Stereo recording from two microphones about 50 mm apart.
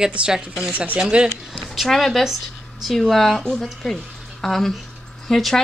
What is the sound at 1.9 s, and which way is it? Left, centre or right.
Speech, centre.